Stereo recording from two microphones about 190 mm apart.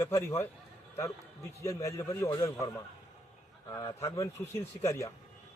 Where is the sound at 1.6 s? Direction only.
15° left (ahead or behind).